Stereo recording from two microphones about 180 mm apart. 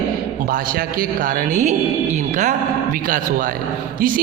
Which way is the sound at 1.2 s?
40° right (ahead or behind).